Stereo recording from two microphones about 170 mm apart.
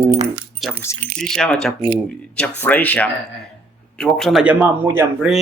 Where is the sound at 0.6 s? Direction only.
Centre (ahead or behind).